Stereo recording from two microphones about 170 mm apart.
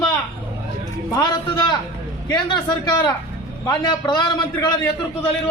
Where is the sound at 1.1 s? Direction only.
25° left (ahead or behind).